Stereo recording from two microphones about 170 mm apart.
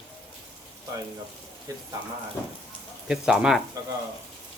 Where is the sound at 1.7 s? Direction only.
20° right (ahead or behind).